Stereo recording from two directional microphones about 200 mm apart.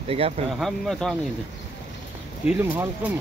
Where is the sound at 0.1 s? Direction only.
30° right (ahead or behind).